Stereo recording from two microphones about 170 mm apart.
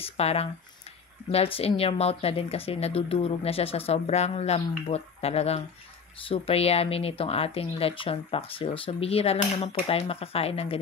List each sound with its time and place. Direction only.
0.0 s speech: 35° left (ahead or behind)